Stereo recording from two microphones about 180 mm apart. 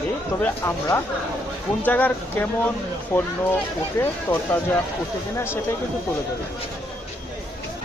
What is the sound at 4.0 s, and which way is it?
Speech, 15° left (ahead or behind).